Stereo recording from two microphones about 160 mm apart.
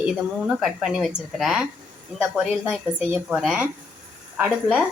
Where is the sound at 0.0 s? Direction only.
5° right (ahead or behind).